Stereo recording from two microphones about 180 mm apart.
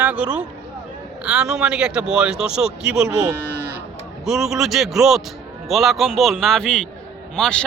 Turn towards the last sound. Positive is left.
turn(degrees=5)  # may be behind; listen again after turning